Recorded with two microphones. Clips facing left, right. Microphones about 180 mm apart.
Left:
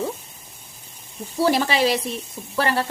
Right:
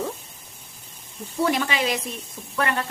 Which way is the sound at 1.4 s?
35° left (ahead or behind).